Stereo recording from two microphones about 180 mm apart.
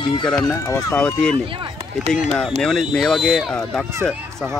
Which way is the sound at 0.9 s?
5° left (ahead or behind).